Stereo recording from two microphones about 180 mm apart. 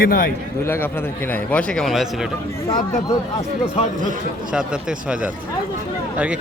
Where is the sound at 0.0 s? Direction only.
55° left (ahead or behind).